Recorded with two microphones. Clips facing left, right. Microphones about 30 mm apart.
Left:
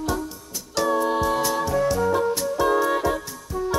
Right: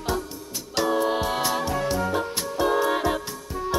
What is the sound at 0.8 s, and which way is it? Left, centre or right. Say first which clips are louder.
Music: left 1 dB; right.